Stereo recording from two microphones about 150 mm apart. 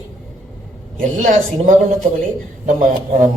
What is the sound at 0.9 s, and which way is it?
A woman's voice, 60° right (ahead or behind).